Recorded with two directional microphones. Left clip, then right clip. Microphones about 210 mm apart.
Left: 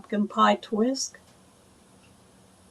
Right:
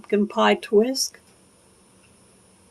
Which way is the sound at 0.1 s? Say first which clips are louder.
Right 3 dB; 35° right (ahead or behind).